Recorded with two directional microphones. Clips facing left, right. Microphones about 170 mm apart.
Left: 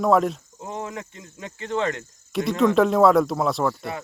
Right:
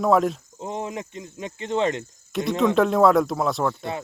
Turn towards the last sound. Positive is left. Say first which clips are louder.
# left 1 dB
turn(degrees=0)  # may be behind; listen again after turning